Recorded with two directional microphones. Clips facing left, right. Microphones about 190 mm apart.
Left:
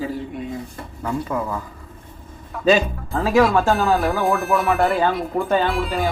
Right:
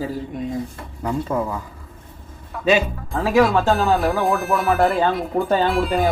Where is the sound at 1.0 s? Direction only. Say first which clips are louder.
Right 2 dB; 20° right (ahead or behind).